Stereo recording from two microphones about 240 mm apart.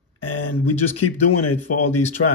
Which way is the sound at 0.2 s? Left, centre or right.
Left.